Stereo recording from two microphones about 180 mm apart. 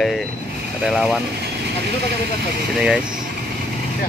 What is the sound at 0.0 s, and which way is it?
Speech, centre (ahead or behind).